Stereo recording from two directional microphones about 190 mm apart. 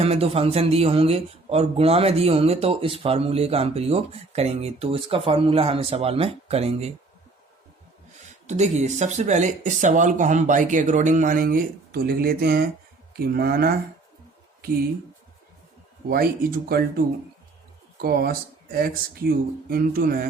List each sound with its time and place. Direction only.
0.0 s speech: 30° right (ahead or behind)
8.4 s speech: 35° right (ahead or behind); by 13.7 s 50° right (ahead or behind)
16.0 s speech: 50° right (ahead or behind)
18.0 s speech: 50° right (ahead or behind)